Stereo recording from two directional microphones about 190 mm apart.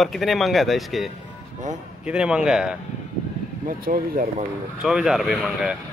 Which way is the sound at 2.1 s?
5° right (ahead or behind).